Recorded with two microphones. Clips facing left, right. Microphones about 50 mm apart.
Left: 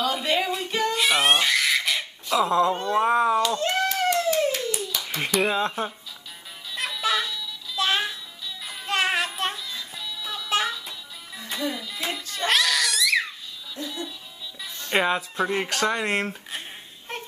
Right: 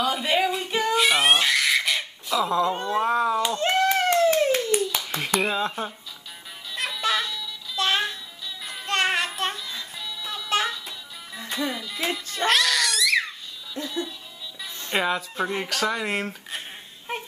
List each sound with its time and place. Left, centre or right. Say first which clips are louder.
0.0 s a sound: right 1 dB; centre
3.0 s speech: left 2 dB; centre
3.4 s clapping: right 2 dB; right
5.4 s speech: left 2 dB; centre
6.7 s music: even; centre
12.4 s cat: right 1 dB; centre
14.9 s speech: left 2 dB; centre
17.1 s a sound: right 3 dB; centre